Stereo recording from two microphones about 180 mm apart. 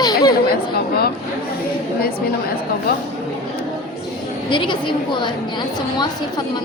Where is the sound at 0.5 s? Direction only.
60° left (ahead or behind).